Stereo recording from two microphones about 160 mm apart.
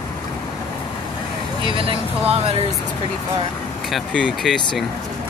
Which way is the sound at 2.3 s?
40° right (ahead or behind).